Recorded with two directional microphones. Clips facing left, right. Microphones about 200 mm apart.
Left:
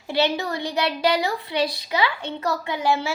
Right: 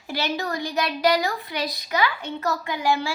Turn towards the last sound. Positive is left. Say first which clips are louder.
# left 1 dB
turn(degrees=25)  # may be behind; listen again after turning